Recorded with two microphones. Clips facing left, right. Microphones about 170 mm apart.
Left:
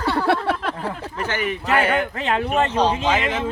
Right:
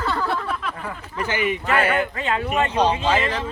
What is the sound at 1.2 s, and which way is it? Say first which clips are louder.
A man's voice: right 2 dB; 10° right (ahead or behind).